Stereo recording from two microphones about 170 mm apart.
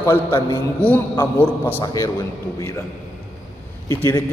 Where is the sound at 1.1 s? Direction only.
15° left (ahead or behind).